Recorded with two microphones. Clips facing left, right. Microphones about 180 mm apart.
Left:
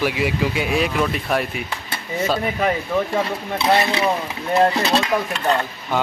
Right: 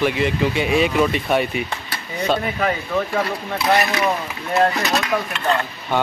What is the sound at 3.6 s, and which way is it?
Speech, 25° left (ahead or behind).